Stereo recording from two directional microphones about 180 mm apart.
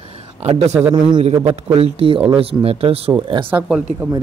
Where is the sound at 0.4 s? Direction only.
40° right (ahead or behind).